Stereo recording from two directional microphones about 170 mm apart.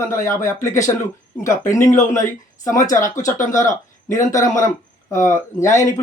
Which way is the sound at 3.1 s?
45° left (ahead or behind).